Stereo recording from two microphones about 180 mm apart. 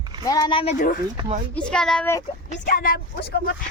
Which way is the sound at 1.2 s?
35° right (ahead or behind).